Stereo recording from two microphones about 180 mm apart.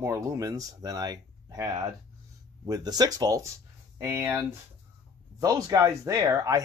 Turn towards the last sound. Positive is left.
turn(degrees=-20)  # may be behind; listen again after turning